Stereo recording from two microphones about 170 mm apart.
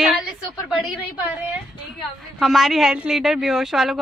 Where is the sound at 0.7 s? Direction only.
Centre (ahead or behind).